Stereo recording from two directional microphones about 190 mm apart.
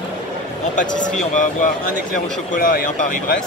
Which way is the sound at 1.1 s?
40° left (ahead or behind).